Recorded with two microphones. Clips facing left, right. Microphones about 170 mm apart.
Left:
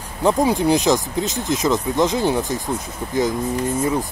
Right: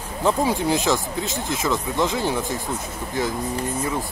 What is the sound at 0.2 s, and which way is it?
Speech, 15° left (ahead or behind).